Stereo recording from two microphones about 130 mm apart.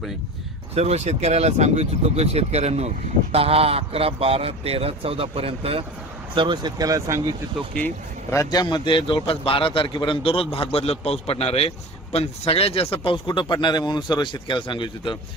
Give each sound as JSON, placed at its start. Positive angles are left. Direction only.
{"t": 0.8, "sound": "a man's voice", "side_deg": -55}
{"t": 7.7, "sound": "speech", "side_deg": 10}
{"t": 8.4, "sound": "a man's voice", "side_deg": 30}